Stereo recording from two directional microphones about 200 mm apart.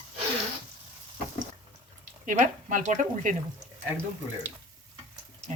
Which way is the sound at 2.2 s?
40° right (ahead or behind).